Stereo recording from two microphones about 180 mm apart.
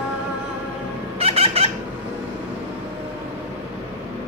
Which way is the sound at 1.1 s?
35° right (ahead or behind).